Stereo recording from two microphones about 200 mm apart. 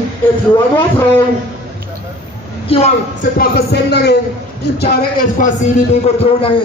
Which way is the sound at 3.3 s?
55° left (ahead or behind).